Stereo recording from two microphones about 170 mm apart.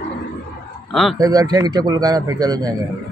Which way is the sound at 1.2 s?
20° right (ahead or behind).